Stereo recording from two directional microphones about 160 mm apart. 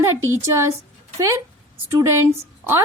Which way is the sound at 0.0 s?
15° right (ahead or behind).